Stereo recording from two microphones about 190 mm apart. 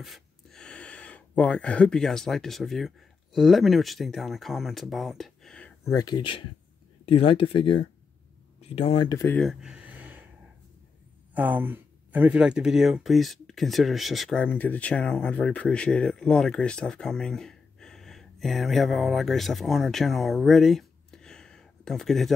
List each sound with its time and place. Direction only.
0.0 s gasp: centre (ahead or behind)
3.3 s speech: centre (ahead or behind)
5.9 s speech: 20° left (ahead or behind)
9.3 s a sound: centre (ahead or behind)
11.3 s speech: 10° right (ahead or behind)